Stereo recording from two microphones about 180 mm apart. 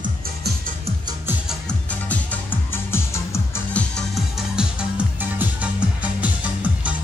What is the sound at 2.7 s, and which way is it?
Music, 15° left (ahead or behind).